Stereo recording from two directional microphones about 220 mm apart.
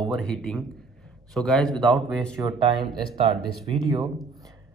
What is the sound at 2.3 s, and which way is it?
Speech, 15° right (ahead or behind).